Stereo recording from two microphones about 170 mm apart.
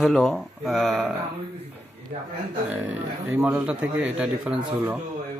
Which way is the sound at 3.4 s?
5° right (ahead or behind).